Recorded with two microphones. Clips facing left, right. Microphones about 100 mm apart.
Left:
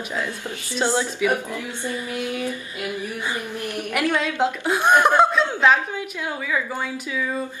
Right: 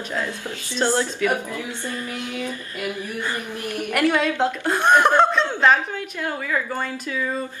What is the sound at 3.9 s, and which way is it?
A woman's voice, centre (ahead or behind).